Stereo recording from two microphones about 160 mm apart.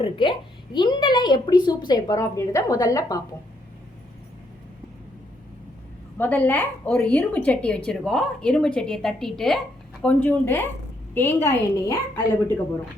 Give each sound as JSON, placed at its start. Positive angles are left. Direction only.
{"t": 0.0, "sound": "speech", "side_deg": 30}
{"t": 6.1, "sound": "a woman's voice", "side_deg": 10}